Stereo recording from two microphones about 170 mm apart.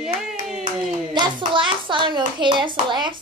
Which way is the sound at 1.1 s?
25° right (ahead or behind).